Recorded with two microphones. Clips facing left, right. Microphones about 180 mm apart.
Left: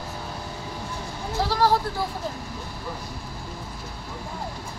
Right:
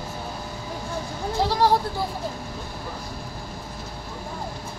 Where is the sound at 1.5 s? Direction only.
15° right (ahead or behind).